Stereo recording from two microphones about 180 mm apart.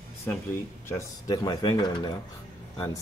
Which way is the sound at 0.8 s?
20° left (ahead or behind).